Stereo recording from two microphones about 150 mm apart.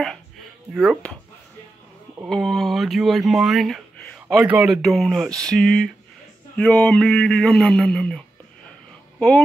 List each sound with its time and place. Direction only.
0.7 s speech: centre (ahead or behind)
2.2 s speech: centre (ahead or behind)